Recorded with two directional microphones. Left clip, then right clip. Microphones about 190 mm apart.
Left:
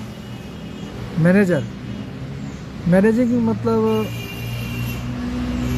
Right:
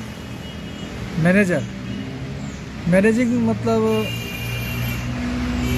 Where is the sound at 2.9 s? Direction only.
45° left (ahead or behind).